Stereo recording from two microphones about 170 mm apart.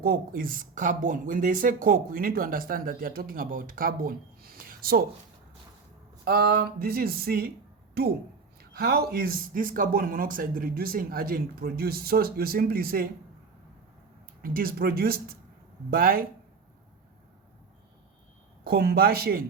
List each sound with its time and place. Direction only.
0.0 s speech: 60° right (ahead or behind)
6.2 s speech: 65° right (ahead or behind)
8.8 s speech: 65° right (ahead or behind)
14.4 s speech: 60° right (ahead or behind)
18.6 s speech: 65° right (ahead or behind)